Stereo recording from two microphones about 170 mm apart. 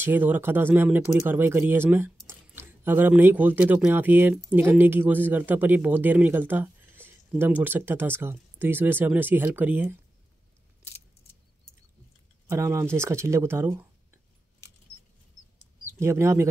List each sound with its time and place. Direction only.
0.0 s a man's voice: 10° right (ahead or behind)
12.4 s a man's voice: 15° right (ahead or behind)
16.0 s a man's voice: 15° right (ahead or behind)